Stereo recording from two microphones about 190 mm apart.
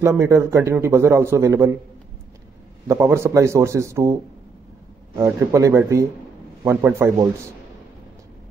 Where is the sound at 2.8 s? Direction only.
15° right (ahead or behind).